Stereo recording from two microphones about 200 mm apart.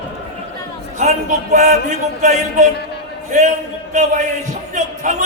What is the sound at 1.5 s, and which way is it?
Music, 35° right (ahead or behind).